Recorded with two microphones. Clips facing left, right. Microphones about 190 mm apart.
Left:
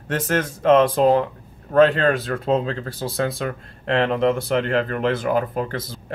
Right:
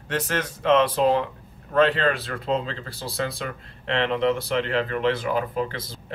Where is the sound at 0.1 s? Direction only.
45° left (ahead or behind).